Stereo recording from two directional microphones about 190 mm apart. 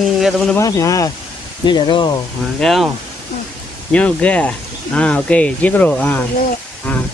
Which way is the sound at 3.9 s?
5° left (ahead or behind).